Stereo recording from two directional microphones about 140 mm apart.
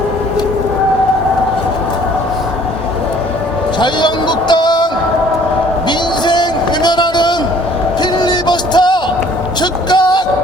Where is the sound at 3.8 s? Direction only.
30° left (ahead or behind).